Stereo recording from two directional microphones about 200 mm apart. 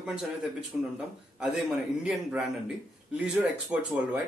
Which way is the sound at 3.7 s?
5° right (ahead or behind).